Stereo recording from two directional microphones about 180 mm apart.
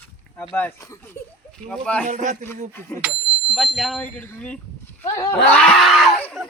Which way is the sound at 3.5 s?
Centre (ahead or behind).